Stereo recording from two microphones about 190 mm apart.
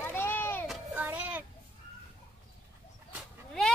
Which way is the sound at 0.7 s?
10° right (ahead or behind).